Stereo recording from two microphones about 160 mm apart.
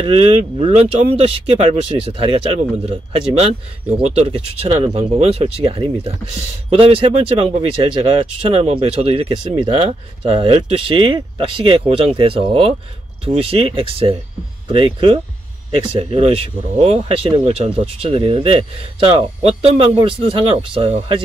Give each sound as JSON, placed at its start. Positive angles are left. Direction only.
{"t": 0.0, "sound": "speech", "side_deg": -35}